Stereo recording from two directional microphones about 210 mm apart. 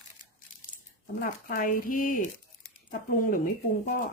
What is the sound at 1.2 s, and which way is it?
Speech, 40° left (ahead or behind).